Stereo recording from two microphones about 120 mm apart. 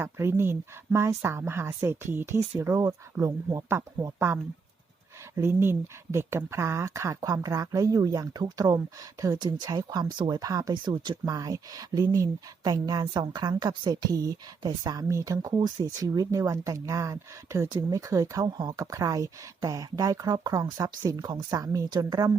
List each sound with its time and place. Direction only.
0.0 s speech: 20° right (ahead or behind)
5.4 s speech: 20° right (ahead or behind)